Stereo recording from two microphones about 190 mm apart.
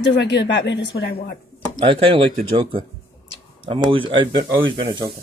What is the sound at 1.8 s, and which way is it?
Speech, 30° right (ahead or behind).